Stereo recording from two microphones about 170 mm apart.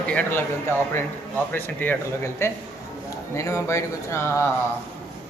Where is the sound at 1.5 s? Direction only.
10° left (ahead or behind).